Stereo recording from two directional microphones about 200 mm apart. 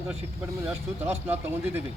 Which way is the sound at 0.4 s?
15° right (ahead or behind).